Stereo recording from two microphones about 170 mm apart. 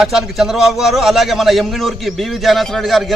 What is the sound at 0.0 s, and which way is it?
A man's voice, centre (ahead or behind).